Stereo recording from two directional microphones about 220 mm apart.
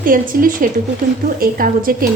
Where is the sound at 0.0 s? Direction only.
40° right (ahead or behind).